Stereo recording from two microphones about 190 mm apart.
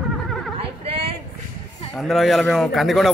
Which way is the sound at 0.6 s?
30° right (ahead or behind).